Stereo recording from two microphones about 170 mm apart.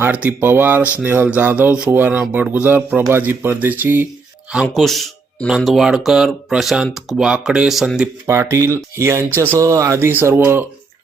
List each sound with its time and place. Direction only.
0.0 s speech: 10° right (ahead or behind)
4.5 s speech: centre (ahead or behind)
8.3 s speech: 15° right (ahead or behind)